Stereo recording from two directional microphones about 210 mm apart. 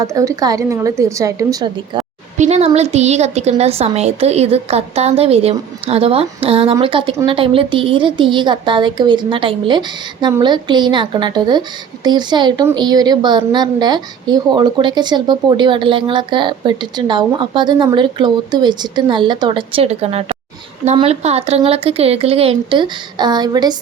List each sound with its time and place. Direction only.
0.0 s a woman's voice: 15° right (ahead or behind)
2.4 s a woman's voice: 30° right (ahead or behind)